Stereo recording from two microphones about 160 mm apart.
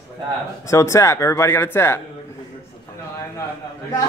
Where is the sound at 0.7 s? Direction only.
20° left (ahead or behind).